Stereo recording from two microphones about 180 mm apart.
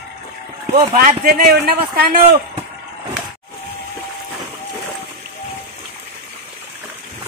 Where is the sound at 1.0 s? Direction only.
50° right (ahead or behind).